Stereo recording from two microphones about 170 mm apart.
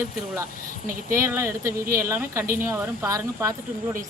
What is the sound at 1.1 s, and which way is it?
Speech, 15° right (ahead or behind).